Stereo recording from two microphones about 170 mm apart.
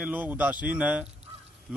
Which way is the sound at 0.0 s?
10° right (ahead or behind).